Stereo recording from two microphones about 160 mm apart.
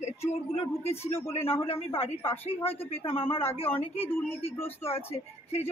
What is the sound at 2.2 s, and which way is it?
Speech, 15° left (ahead or behind).